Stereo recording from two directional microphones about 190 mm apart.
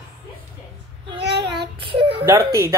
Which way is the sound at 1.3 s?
60° right (ahead or behind).